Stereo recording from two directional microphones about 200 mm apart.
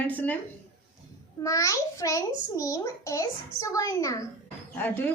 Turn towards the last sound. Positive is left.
turn(degrees=10)  # may be behind; listen again after turning